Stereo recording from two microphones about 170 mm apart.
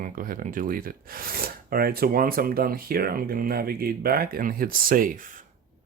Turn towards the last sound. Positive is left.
turn(degrees=-50)  # may be behind; listen again after turning